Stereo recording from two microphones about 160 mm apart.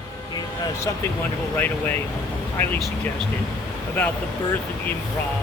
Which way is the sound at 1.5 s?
10° left (ahead or behind).